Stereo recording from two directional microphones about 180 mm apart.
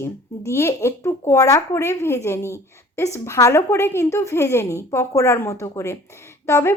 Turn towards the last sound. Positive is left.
turn(degrees=15)  # may be behind; listen again after turning